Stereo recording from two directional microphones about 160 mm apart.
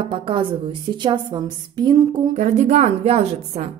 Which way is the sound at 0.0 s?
30° right (ahead or behind).